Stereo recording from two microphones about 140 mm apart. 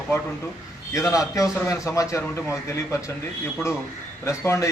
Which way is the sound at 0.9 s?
20° left (ahead or behind).